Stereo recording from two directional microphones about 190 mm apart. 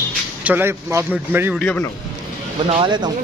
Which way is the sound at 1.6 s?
5° left (ahead or behind).